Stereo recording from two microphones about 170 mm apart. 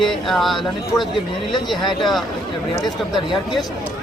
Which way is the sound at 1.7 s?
Centre (ahead or behind).